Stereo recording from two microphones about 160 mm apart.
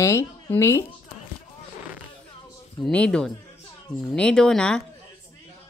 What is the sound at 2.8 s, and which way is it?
Speech, 5° left (ahead or behind).